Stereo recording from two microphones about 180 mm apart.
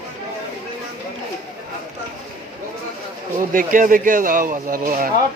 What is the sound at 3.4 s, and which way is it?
Speech, 45° right (ahead or behind).